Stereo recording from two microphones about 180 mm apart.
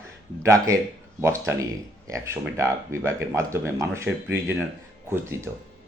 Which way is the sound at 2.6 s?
15° right (ahead or behind).